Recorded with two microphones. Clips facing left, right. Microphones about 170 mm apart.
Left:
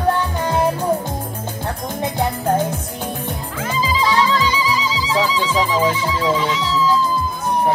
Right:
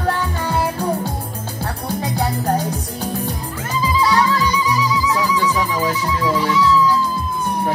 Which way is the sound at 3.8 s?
90° left.